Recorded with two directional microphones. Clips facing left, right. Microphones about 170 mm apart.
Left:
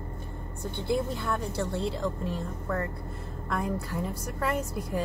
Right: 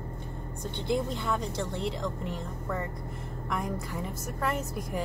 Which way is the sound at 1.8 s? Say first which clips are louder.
Left 2 dB; 15° right (ahead or behind).